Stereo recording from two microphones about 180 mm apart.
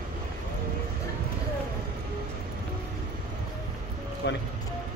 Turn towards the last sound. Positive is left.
turn(degrees=70)  # may be behind; listen again after turning